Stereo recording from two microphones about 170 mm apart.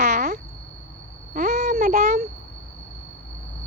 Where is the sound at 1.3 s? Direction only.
45° right (ahead or behind).